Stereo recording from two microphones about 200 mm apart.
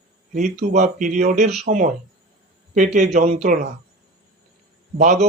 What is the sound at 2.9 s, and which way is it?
Speech, 35° right (ahead or behind).